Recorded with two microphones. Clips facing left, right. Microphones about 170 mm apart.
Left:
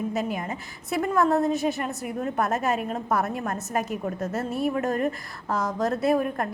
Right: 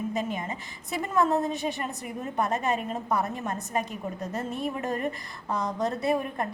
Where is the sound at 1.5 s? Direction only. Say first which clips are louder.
Left 5 dB; 5° left (ahead or behind).